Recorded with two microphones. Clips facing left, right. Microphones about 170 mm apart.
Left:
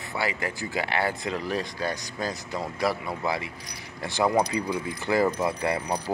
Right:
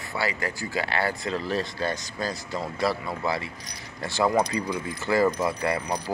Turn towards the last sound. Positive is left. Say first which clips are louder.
# even
turn(degrees=25)  # may be behind; listen again after turning